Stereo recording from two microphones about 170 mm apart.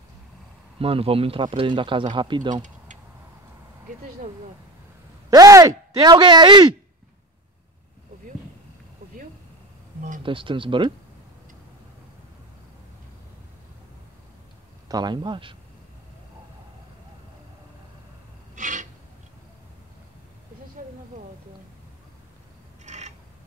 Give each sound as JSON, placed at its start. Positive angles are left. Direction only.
{"t": 0.7, "sound": "speech", "side_deg": -35}
{"t": 2.5, "sound": "a sound", "side_deg": -45}
{"t": 5.3, "sound": "speech", "side_deg": -20}
{"t": 10.2, "sound": "speech", "side_deg": -30}
{"t": 14.9, "sound": "speech", "side_deg": -25}
{"t": 18.5, "sound": "gasp", "side_deg": -50}
{"t": 22.8, "sound": "mechanisms", "side_deg": -40}